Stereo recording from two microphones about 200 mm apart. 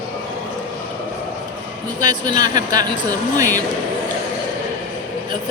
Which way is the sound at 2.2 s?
20° right (ahead or behind).